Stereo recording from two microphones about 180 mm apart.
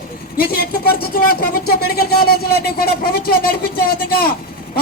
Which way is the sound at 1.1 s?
55° left (ahead or behind).